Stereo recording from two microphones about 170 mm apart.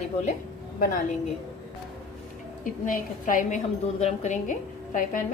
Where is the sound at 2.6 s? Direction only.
50° left (ahead or behind).